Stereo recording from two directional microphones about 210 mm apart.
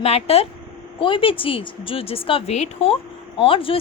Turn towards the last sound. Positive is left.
turn(degrees=25)  # may be behind; listen again after turning